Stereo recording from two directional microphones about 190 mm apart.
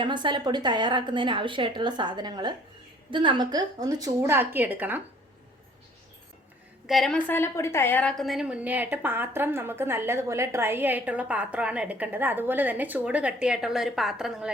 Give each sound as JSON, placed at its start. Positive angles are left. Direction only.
{"t": 0.0, "sound": "a woman's voice", "side_deg": -25}
{"t": 6.8, "sound": "a woman's voice", "side_deg": 0}